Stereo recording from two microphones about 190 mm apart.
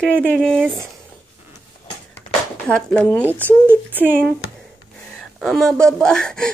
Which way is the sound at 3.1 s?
10° right (ahead or behind).